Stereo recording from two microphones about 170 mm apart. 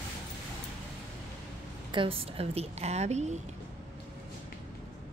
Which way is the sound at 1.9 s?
30° right (ahead or behind).